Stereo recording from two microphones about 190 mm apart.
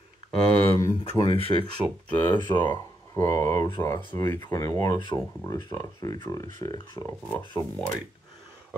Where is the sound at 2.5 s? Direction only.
15° left (ahead or behind).